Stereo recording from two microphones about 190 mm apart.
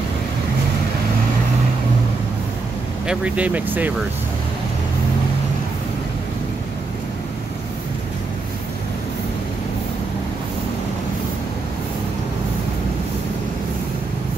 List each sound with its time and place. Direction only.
3.1 s speech: 5° right (ahead or behind)